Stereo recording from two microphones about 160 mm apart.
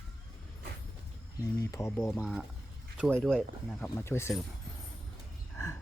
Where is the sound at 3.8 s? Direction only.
15° left (ahead or behind).